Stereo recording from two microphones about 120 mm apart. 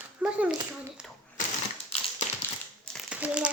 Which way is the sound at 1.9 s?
55° left (ahead or behind).